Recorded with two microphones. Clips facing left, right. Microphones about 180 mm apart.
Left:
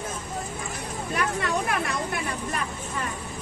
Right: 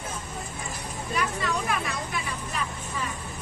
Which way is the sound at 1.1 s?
60° left (ahead or behind).